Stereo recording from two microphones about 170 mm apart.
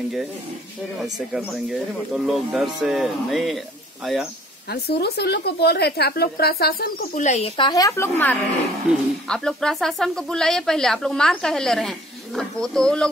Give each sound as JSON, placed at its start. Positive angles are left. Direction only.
{"t": 1.1, "sound": "speech", "side_deg": -5}
{"t": 4.6, "sound": "speech", "side_deg": 70}
{"t": 7.2, "sound": "a woman's voice", "side_deg": 40}
{"t": 9.3, "sound": "speech", "side_deg": 5}